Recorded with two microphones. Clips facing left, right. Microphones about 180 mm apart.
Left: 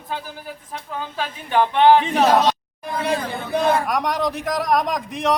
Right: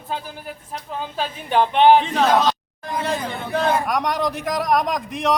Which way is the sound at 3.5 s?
15° left (ahead or behind).